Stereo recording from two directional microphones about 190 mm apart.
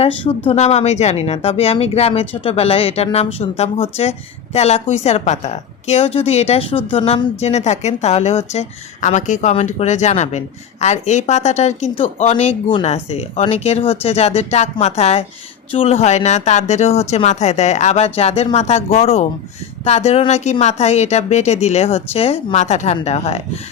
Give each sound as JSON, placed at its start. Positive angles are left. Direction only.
{"t": 0.0, "sound": "a woman's voice", "side_deg": 30}